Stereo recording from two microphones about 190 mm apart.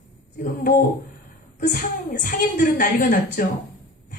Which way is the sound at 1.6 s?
50° left (ahead or behind).